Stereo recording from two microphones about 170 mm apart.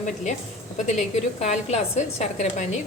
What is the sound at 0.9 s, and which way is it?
A woman's voice, 40° left (ahead or behind).